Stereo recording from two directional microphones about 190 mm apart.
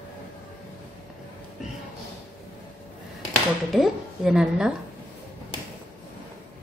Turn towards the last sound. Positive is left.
turn(degrees=-5)  # may be behind; listen again after turning